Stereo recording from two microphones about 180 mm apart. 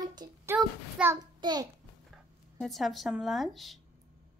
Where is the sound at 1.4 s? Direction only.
25° right (ahead or behind).